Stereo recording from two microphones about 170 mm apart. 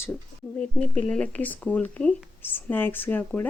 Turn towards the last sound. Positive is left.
turn(degrees=10)  # may be behind; listen again after turning